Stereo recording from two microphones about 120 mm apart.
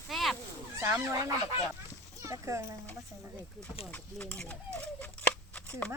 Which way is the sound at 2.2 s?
25° right (ahead or behind).